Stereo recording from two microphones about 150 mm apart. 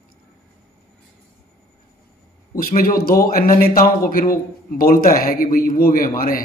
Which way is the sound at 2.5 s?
70° left (ahead or behind).